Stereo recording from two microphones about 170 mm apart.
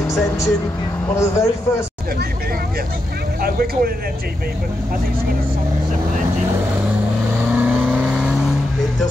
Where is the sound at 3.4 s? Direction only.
60° right (ahead or behind).